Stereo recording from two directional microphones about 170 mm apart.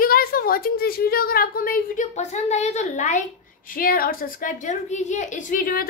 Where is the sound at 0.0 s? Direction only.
60° left (ahead or behind).